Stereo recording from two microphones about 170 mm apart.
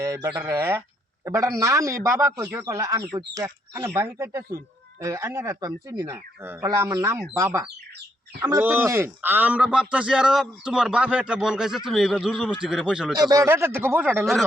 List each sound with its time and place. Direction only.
0.0 s speech: 20° right (ahead or behind)
13.1 s speech: 20° right (ahead or behind)